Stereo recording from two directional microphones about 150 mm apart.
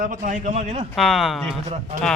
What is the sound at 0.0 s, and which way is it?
Speech, 65° right (ahead or behind).